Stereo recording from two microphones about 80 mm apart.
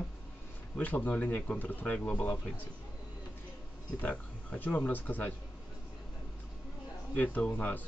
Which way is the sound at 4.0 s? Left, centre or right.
Centre.